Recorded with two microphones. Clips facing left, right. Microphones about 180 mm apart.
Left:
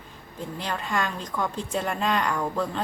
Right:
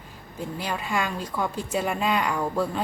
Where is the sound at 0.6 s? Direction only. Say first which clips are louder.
Even; 10° right (ahead or behind).